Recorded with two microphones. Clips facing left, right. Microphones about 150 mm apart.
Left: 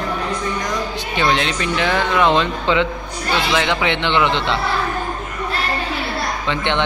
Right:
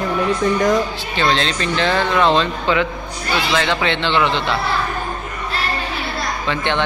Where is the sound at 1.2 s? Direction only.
15° left (ahead or behind).